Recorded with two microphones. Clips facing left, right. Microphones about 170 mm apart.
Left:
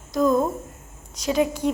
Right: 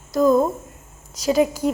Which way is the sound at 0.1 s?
5° right (ahead or behind).